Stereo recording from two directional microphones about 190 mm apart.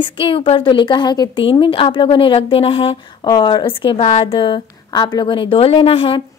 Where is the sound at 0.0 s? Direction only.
25° left (ahead or behind).